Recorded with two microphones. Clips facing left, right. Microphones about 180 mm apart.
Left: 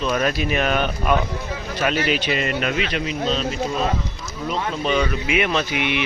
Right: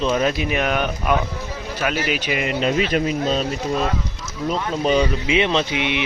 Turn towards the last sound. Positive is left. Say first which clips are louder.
# right 1 dB
turn(degrees=-20)  # may be behind; listen again after turning